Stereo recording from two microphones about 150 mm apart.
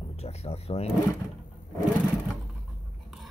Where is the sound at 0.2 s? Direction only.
45° left (ahead or behind).